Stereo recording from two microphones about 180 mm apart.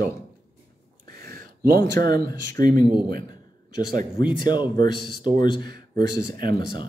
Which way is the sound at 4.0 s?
25° left (ahead or behind).